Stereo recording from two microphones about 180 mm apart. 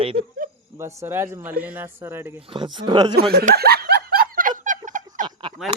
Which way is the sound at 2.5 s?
25° right (ahead or behind).